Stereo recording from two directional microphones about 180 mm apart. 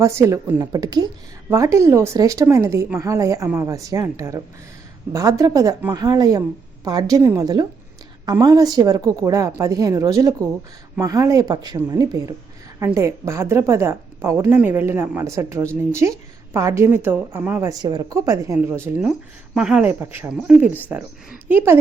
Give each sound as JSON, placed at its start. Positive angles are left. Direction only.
{"t": 0.0, "sound": "a woman's voice", "side_deg": -15}